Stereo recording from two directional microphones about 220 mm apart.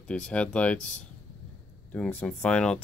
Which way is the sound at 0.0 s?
5° left (ahead or behind).